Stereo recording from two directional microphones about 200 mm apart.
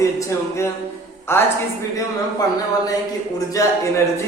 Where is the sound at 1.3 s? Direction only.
10° left (ahead or behind).